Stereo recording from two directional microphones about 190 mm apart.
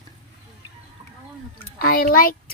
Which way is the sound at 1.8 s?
50° left (ahead or behind).